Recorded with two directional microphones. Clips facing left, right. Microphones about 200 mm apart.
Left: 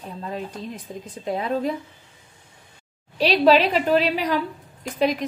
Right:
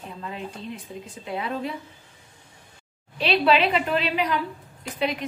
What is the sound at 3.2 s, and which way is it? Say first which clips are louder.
A woman's voice: left 4 dB; 40° left (ahead or behind).